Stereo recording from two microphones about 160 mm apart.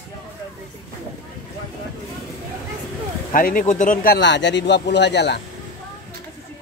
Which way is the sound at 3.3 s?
60° left (ahead or behind).